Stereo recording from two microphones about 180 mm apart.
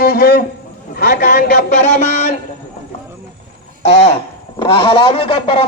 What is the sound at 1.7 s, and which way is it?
Speech, 40° left (ahead or behind).